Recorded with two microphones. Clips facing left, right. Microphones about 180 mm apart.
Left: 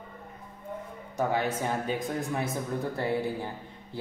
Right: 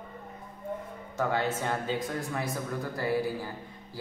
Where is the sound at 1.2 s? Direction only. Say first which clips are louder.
Left 1 dB; 15° left (ahead or behind).